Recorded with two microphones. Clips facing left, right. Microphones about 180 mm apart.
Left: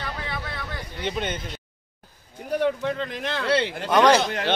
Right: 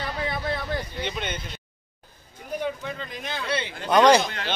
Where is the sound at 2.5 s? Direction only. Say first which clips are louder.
Left 6 dB; 70° left (ahead or behind).